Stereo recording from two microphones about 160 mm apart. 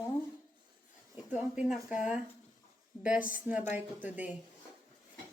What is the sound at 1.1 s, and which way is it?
Speech, 5° right (ahead or behind).